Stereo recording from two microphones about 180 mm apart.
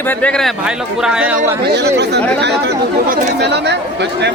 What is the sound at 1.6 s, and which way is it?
Speech, 70° right (ahead or behind).